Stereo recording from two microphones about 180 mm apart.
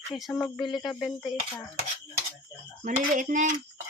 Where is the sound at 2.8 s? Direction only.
45° right (ahead or behind).